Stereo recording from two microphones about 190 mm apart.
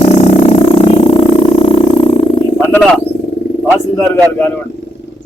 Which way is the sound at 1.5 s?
30° left (ahead or behind).